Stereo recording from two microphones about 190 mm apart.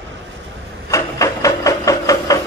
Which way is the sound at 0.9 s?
15° left (ahead or behind).